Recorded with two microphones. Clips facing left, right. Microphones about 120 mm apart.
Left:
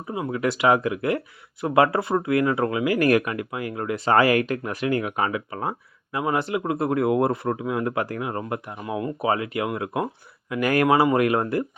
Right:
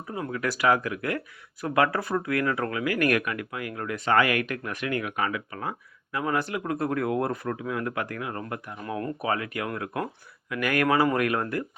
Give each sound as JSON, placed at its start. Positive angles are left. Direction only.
{"t": 0.1, "sound": "speech", "side_deg": 20}
{"t": 8.8, "sound": "speech", "side_deg": 15}
{"t": 9.2, "sound": "speech", "side_deg": 25}